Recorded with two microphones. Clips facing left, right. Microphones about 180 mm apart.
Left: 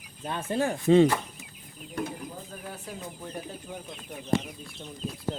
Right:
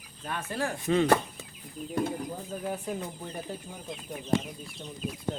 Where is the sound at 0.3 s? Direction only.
25° left (ahead or behind).